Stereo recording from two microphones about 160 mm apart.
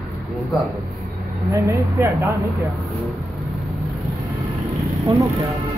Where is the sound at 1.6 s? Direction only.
15° right (ahead or behind).